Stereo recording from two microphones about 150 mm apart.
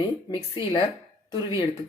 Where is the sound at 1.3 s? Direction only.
30° left (ahead or behind).